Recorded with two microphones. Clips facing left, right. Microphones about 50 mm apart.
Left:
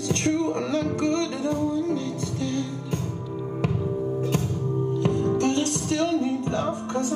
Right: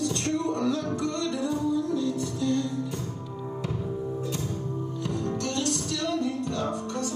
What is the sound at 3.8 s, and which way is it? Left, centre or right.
Music, centre.